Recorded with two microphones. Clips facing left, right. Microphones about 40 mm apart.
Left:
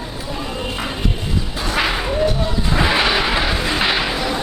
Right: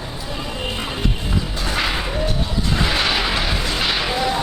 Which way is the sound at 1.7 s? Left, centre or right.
Centre.